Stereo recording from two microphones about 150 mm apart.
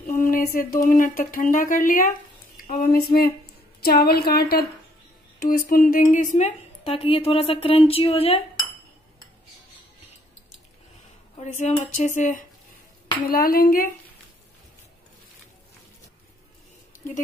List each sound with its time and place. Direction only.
0.0 s a sound: 65° left (ahead or behind)
0.8 s speech: 60° left (ahead or behind)
2.8 s a woman's voice: 85° left
5.7 s speech: 70° left (ahead or behind)
6.8 s speech: 40° left (ahead or behind)
11.3 s speech: 50° left (ahead or behind)
13.3 s speech: 80° left